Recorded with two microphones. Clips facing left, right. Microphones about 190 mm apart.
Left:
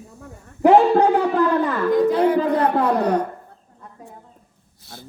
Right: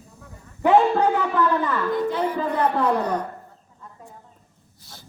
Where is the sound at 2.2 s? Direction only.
65° left (ahead or behind).